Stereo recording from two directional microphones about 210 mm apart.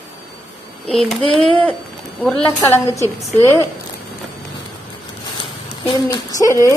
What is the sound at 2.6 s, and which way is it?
Speech, 15° left (ahead or behind).